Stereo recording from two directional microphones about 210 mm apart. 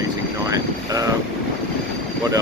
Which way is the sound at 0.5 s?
15° right (ahead or behind).